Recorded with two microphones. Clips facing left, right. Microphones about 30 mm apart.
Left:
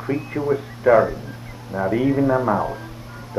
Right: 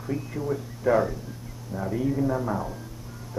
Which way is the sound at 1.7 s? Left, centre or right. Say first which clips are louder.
Left 8 dB; left.